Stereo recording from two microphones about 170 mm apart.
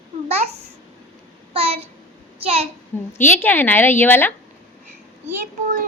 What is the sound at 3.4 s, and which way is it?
Speech, 10° left (ahead or behind).